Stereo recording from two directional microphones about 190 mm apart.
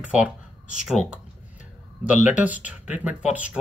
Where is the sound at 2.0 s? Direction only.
10° right (ahead or behind).